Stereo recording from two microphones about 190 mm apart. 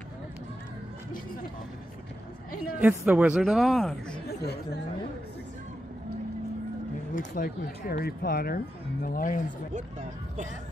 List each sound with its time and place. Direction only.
2.8 s a woman's voice: 10° right (ahead or behind)
4.4 s speech: 60° left (ahead or behind)
7.2 s speech: 45° left (ahead or behind)
9.8 s speech: 40° right (ahead or behind)